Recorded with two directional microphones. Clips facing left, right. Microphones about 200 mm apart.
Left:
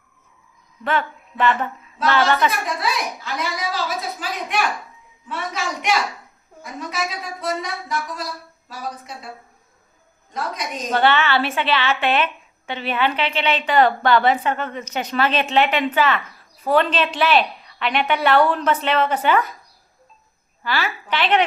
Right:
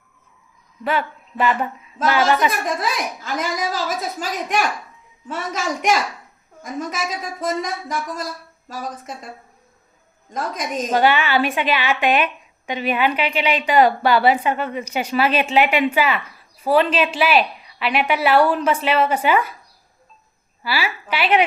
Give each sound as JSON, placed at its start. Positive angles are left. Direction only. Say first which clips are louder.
{"t": 0.9, "sound": "a woman's voice", "louder": "even", "side_deg": -10}
{"t": 2.5, "sound": "a woman's voice", "louder": "right 1 dB", "side_deg": -45}
{"t": 7.4, "sound": "a woman's voice", "louder": "right 2 dB", "side_deg": -45}
{"t": 10.3, "sound": "a woman's voice", "louder": "right 3 dB", "side_deg": -50}
{"t": 10.9, "sound": "a woman's voice", "louder": "right 1 dB", "side_deg": -15}
{"t": 20.7, "sound": "a woman's voice", "louder": "even", "side_deg": -10}